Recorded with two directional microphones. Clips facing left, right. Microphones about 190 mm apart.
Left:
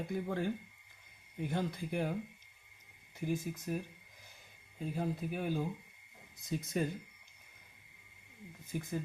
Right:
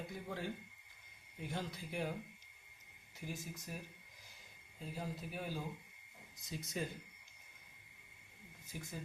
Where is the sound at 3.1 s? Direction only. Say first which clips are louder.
Left 10 dB; 55° left (ahead or behind).